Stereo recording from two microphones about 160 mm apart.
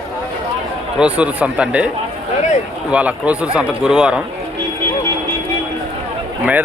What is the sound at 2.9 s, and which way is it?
Speech, 10° right (ahead or behind).